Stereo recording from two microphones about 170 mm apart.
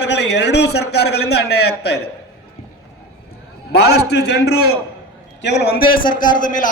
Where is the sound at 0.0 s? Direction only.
90° left; by 1.4 s 75° left (ahead or behind).